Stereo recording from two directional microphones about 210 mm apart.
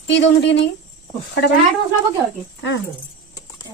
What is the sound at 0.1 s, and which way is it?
Speech, 60° left (ahead or behind).